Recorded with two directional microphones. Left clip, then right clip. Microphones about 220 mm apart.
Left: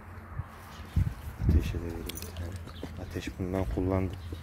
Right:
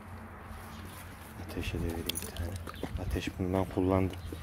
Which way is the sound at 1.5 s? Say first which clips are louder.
Left 3 dB; 10° right (ahead or behind).